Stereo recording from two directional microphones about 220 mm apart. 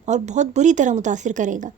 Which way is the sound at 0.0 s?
30° right (ahead or behind).